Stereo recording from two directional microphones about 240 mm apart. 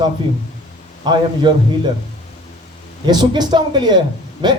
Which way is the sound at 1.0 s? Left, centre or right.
Centre.